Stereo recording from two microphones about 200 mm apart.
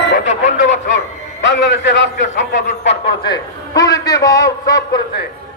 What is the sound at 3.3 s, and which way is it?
A man's voice, 15° left (ahead or behind).